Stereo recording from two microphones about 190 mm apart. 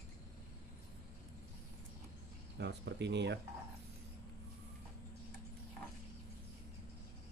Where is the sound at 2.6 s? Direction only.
65° right (ahead or behind).